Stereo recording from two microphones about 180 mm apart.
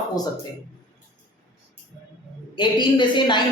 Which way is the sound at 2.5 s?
25° left (ahead or behind).